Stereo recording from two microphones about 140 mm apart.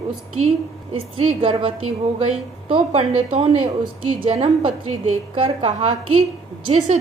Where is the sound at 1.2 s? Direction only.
45° right (ahead or behind).